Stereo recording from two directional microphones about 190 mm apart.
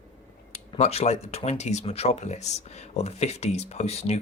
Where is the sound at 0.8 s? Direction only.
35° left (ahead or behind).